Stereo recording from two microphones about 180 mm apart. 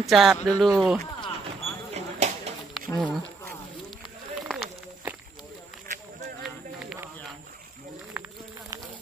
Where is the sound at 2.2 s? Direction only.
40° right (ahead or behind).